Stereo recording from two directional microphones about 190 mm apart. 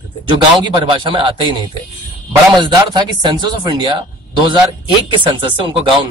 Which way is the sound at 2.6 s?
25° right (ahead or behind).